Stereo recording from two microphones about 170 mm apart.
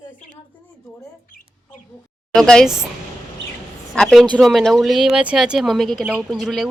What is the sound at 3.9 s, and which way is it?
A man's voice, centre (ahead or behind).